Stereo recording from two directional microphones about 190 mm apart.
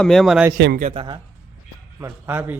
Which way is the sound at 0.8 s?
35° right (ahead or behind).